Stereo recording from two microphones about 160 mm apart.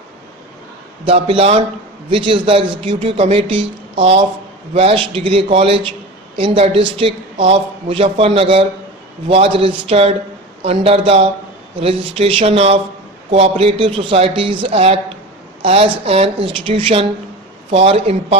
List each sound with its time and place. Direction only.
1.0 s a woman's voice: 35° right (ahead or behind)